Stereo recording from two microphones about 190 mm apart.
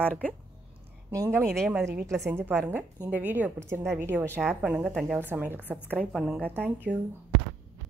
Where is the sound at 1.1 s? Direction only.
15° right (ahead or behind).